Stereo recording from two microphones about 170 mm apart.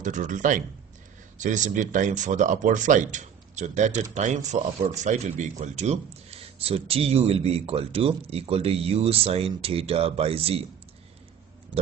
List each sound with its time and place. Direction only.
0.0 s speech: 45° right (ahead or behind)